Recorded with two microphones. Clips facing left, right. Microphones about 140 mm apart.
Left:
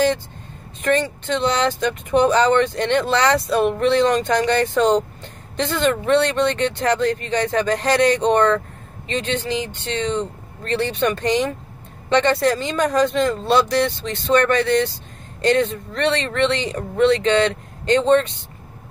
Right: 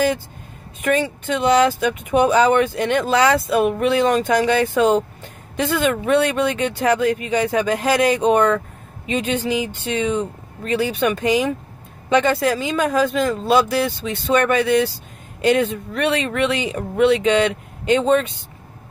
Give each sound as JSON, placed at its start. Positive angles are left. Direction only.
{"t": 0.8, "sound": "speech", "side_deg": -10}